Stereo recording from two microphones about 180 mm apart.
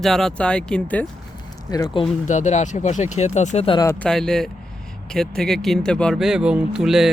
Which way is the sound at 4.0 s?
5° left (ahead or behind).